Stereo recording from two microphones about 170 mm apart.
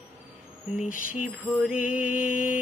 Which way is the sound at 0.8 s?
50° left (ahead or behind).